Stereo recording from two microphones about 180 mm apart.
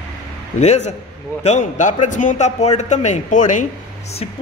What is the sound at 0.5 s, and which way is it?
A man's voice, 40° left (ahead or behind).